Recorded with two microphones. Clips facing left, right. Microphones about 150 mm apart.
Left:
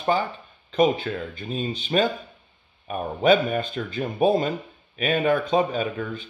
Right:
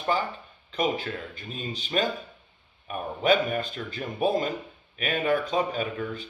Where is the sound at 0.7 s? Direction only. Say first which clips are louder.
Left 7 dB; 25° left (ahead or behind).